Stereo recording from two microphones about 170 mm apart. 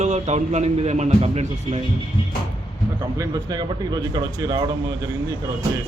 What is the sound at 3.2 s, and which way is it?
Speech, 25° right (ahead or behind).